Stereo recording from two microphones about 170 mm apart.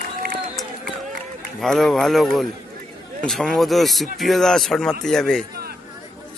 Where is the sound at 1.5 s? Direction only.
Centre (ahead or behind).